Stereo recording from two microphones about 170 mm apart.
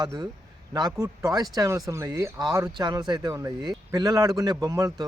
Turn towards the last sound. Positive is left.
turn(degrees=-20)  # may be behind; listen again after turning